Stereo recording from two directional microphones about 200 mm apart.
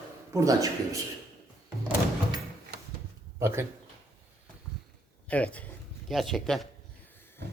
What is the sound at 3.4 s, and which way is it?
Speech, 15° right (ahead or behind).